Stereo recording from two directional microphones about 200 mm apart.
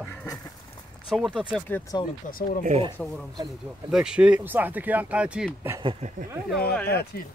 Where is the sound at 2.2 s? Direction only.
45° left (ahead or behind).